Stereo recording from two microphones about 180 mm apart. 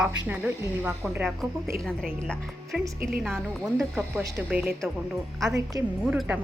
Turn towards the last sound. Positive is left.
turn(degrees=-5)  # may be behind; listen again after turning